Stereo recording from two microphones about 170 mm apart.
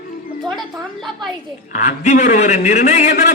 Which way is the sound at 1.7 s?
45° left (ahead or behind).